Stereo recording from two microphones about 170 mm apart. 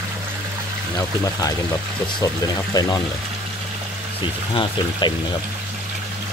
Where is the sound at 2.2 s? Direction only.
20° left (ahead or behind).